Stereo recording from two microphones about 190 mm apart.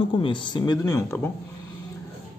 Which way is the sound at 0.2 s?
25° left (ahead or behind).